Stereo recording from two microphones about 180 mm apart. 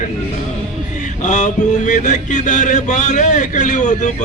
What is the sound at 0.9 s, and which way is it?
Mantra, 40° left (ahead or behind).